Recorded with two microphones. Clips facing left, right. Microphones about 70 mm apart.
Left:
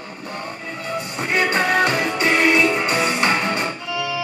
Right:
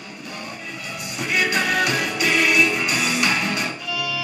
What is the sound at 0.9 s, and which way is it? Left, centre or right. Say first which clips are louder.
Music: left 3 dB; left.